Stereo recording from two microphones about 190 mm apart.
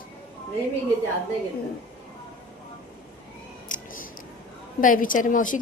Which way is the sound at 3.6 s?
45° left (ahead or behind).